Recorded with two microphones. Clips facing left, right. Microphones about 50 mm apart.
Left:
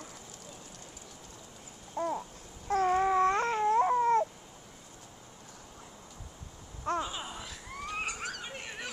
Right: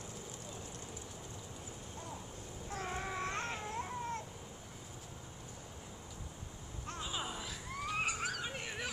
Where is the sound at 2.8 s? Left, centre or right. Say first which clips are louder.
Left 15 dB; left.